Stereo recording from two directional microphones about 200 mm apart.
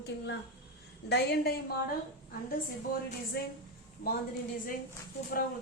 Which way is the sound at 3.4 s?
50° left (ahead or behind).